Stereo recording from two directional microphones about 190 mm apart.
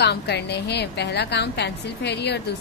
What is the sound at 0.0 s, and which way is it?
A woman's voice, 60° left (ahead or behind).